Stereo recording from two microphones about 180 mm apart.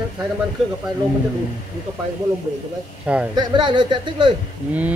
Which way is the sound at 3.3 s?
25° right (ahead or behind).